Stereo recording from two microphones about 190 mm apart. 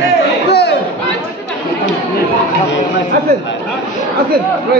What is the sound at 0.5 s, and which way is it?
Chatter, 60° left (ahead or behind).